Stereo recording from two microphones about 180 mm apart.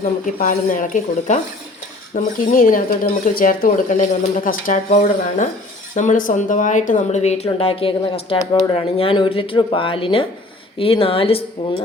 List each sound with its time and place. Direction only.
0.3 s speech: 45° left (ahead or behind)